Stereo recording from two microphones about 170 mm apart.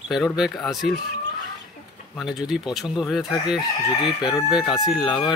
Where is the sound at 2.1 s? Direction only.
Centre (ahead or behind).